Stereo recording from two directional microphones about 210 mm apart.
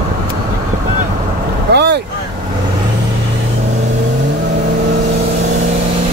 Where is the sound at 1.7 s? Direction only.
50° right (ahead or behind).